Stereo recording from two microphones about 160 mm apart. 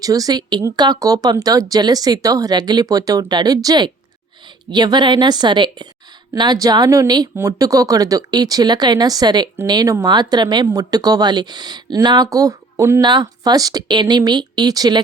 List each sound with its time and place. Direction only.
0.0 s speech: 25° right (ahead or behind)